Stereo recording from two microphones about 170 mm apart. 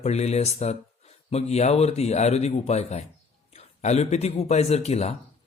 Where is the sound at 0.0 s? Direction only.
40° left (ahead or behind).